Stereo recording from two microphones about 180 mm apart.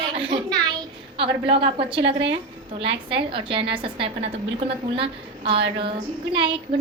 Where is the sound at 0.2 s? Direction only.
30° right (ahead or behind).